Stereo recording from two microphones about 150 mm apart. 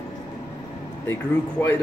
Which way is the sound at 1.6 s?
15° left (ahead or behind).